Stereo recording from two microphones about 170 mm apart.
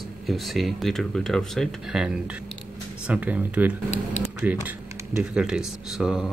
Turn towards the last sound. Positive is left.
turn(degrees=-5)  # may be behind; listen again after turning